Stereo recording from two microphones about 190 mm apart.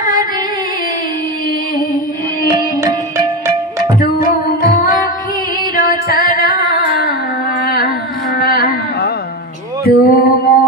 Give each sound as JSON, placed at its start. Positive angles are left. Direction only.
{"t": 0.0, "sound": "music", "side_deg": 45}
{"t": 2.8, "sound": "music", "side_deg": -15}
{"t": 4.2, "sound": "music", "side_deg": 50}
{"t": 7.6, "sound": "a sound", "side_deg": 55}
{"t": 9.8, "sound": "music", "side_deg": 55}